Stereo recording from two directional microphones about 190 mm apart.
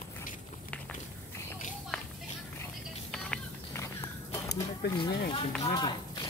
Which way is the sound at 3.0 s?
5° left (ahead or behind).